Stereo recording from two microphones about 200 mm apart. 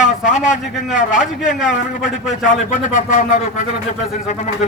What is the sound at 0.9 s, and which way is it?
Speech, 40° left (ahead or behind).